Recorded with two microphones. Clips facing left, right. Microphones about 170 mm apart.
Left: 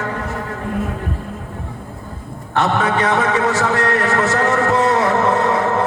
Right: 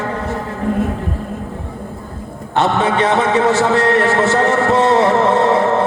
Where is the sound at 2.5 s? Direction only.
25° right (ahead or behind).